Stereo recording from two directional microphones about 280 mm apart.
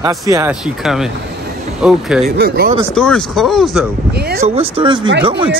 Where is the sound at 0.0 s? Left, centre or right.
Centre.